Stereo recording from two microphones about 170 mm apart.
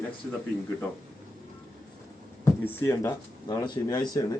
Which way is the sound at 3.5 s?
25° left (ahead or behind).